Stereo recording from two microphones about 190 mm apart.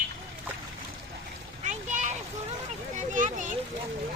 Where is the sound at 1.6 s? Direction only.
40° right (ahead or behind).